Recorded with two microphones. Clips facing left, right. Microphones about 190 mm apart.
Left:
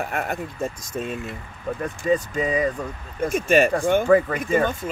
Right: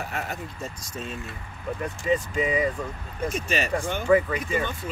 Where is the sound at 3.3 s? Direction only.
50° left (ahead or behind).